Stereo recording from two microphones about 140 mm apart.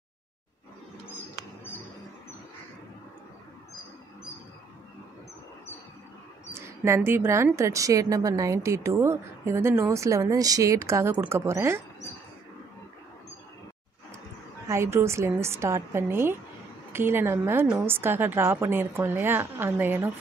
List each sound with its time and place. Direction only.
6.5 s a woman's voice: 20° right (ahead or behind)
14.7 s a woman's voice: 20° right (ahead or behind)